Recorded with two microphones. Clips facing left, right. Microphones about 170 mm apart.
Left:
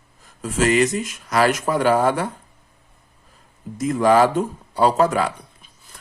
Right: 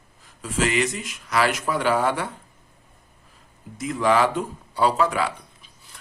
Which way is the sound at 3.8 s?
45° left (ahead or behind).